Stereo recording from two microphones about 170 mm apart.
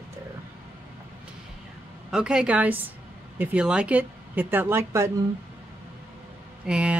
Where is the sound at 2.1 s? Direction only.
5° right (ahead or behind).